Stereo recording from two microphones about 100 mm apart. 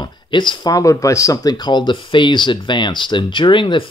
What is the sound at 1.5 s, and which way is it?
Speech, 50° left (ahead or behind).